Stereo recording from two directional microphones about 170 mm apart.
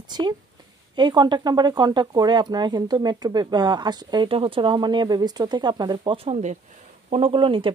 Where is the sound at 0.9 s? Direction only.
25° right (ahead or behind).